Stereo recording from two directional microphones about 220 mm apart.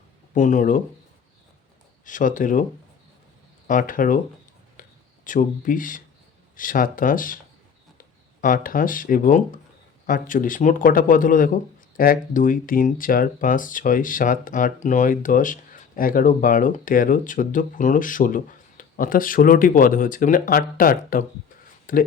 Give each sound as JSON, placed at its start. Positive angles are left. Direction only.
{"t": 0.3, "sound": "speech", "side_deg": 35}
{"t": 2.0, "sound": "speech", "side_deg": 35}
{"t": 3.7, "sound": "speech", "side_deg": 40}
{"t": 4.8, "sound": "a sound", "side_deg": 35}
{"t": 6.6, "sound": "speech", "side_deg": 40}